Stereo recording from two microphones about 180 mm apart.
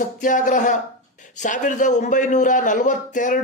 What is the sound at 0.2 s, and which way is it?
A man's voice, 45° left (ahead or behind).